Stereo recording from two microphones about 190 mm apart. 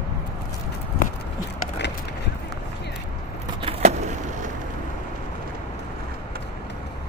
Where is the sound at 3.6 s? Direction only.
35° right (ahead or behind).